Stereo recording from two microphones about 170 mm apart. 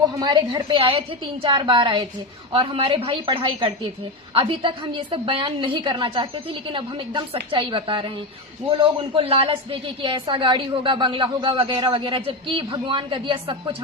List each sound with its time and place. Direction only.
0.1 s a woman's voice: 25° right (ahead or behind)